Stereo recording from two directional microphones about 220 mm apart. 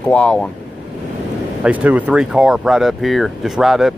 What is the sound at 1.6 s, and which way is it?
Speech, 5° right (ahead or behind).